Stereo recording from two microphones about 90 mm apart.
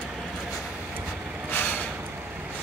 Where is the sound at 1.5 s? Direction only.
20° left (ahead or behind).